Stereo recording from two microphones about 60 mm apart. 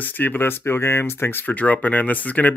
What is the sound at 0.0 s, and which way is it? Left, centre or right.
Speech, left.